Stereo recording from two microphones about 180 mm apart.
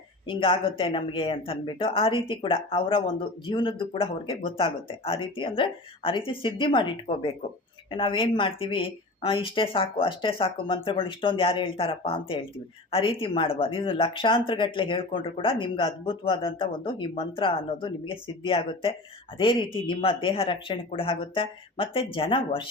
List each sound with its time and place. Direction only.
0.3 s speech: 30° left (ahead or behind)